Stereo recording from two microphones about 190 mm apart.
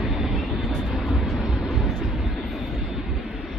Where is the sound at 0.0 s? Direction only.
Centre (ahead or behind).